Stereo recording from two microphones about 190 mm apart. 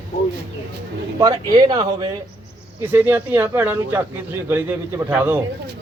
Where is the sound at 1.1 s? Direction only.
20° right (ahead or behind).